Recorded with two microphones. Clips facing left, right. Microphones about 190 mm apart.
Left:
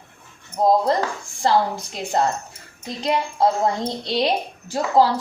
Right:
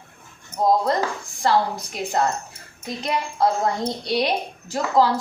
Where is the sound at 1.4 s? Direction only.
25° left (ahead or behind).